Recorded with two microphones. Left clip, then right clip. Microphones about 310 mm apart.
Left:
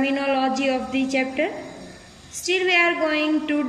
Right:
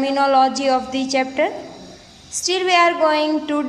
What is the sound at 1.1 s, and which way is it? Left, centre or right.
Speech, right.